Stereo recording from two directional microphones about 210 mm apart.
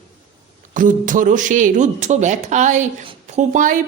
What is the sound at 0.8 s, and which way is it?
Speech, 40° right (ahead or behind).